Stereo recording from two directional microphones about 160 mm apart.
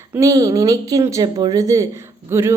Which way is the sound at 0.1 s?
20° right (ahead or behind).